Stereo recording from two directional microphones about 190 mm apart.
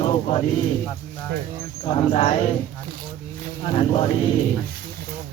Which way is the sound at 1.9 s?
35° left (ahead or behind).